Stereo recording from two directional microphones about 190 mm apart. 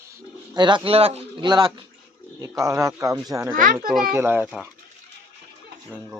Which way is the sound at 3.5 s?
45° right (ahead or behind).